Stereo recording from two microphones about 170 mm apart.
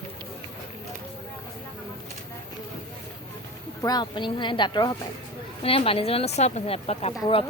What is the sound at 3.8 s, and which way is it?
Speech, 25° left (ahead or behind).